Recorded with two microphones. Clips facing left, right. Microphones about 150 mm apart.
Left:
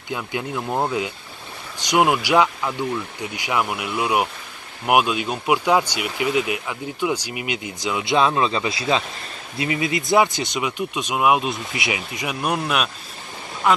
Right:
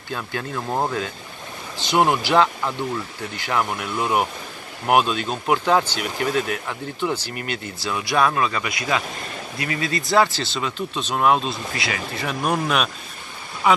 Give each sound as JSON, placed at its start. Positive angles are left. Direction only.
{"t": 0.1, "sound": "speech", "side_deg": 15}
{"t": 0.6, "sound": "speech", "side_deg": 5}